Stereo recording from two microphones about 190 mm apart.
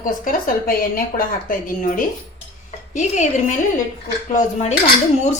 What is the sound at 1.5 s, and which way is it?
A woman's voice, 45° left (ahead or behind).